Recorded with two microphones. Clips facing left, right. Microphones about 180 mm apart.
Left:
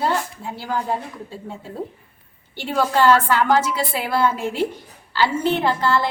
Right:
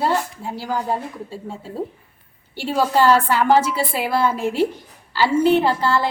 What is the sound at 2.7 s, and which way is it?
A woman's voice, 10° right (ahead or behind).